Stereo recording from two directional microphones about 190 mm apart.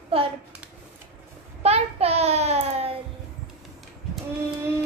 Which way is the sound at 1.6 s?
35° right (ahead or behind).